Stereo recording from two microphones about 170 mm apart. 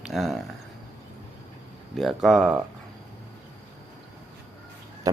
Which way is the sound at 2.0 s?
Centre (ahead or behind).